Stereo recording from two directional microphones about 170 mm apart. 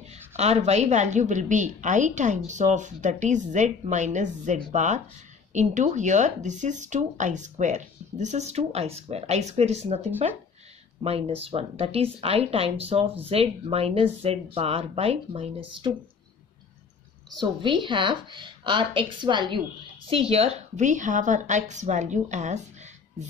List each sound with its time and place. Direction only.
0.4 s speech: 40° right (ahead or behind)
17.3 s a woman's voice: 25° right (ahead or behind); by 22.6 s 45° right (ahead or behind)